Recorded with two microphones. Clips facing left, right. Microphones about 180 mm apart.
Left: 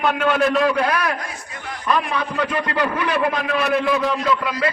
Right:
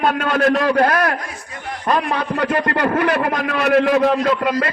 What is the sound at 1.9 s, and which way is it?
A man's voice, 55° right (ahead or behind).